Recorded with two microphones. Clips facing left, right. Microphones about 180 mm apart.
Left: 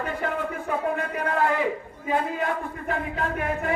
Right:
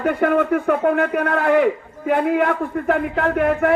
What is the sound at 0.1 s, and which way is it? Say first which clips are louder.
A man's voice: right 11 dB; 65° right (ahead or behind).